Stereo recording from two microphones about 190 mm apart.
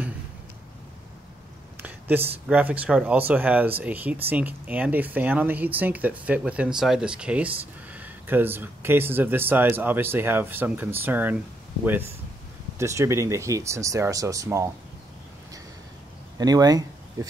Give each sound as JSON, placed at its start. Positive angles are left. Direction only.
{"t": 1.8, "sound": "speech", "side_deg": -10}
{"t": 16.3, "sound": "speech", "side_deg": -20}